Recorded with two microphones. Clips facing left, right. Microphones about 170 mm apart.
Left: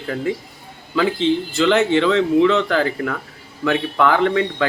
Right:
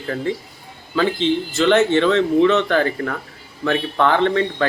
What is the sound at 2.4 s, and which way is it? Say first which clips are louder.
Speech: right 1 dB; 25° right (ahead or behind).